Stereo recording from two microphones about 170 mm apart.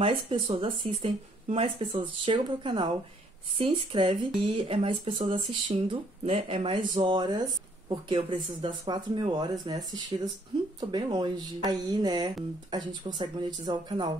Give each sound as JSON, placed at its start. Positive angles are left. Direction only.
{"t": 0.0, "sound": "speech", "side_deg": -30}